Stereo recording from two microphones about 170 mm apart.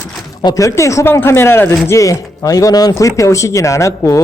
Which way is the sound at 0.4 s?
20° left (ahead or behind).